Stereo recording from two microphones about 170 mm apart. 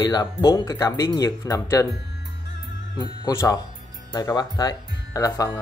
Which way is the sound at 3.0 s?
20° left (ahead or behind).